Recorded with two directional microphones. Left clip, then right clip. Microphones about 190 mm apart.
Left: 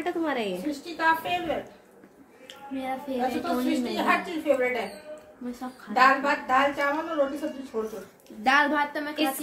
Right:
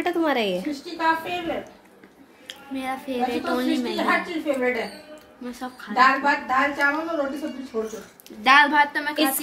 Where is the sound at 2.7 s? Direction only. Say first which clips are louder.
Right 3 dB; 10° left (ahead or behind).